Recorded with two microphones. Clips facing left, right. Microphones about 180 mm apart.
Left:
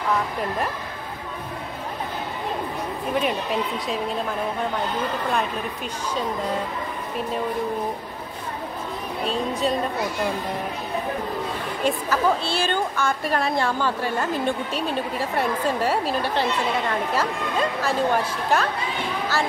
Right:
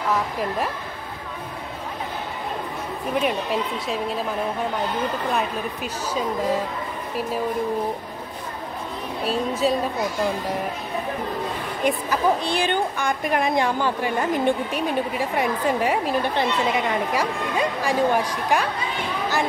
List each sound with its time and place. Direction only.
9.2 s a woman's voice: 5° right (ahead or behind)
11.8 s a woman's voice: 15° right (ahead or behind)